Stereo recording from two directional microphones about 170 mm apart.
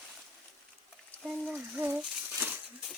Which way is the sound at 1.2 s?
5° right (ahead or behind).